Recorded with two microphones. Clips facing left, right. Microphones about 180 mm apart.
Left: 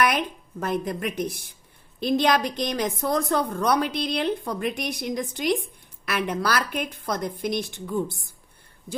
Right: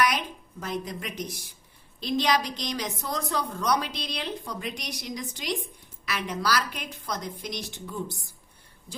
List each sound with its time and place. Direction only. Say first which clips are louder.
0.0 s a woman's voice: left 3 dB; 55° left (ahead or behind)